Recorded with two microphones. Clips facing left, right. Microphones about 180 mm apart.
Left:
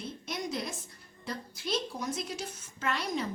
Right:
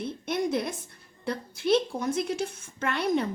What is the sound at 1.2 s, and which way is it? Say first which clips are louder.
A woman's voice: right 9 dB; 60° right (ahead or behind).